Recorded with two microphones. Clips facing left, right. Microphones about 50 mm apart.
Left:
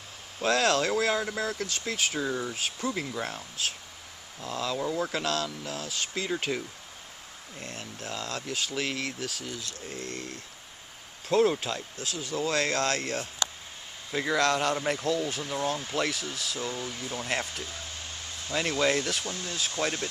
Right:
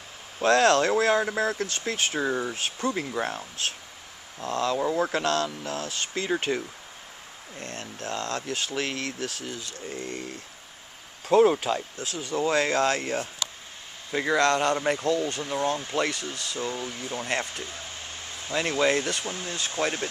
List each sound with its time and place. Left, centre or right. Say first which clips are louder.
0.4 s speech: right 5 dB; centre
1.1 s speech: right 5 dB; right
4.4 s speech: right 6 dB; centre
4.7 s speech: right 4 dB; centre
5.2 s speech: right 4 dB; centre
6.5 s speech: right 4 dB; centre
7.5 s speech: right 3 dB; centre
19.2 s speech: right 2 dB; centre